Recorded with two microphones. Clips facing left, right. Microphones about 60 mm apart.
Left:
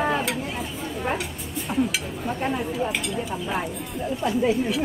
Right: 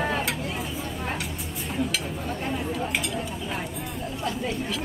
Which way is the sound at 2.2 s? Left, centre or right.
Centre.